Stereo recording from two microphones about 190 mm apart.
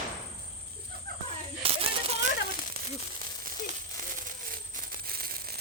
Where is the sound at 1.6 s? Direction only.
30° right (ahead or behind).